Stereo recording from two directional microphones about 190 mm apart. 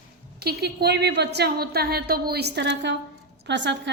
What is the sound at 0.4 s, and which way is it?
A woman's voice, 60° right (ahead or behind).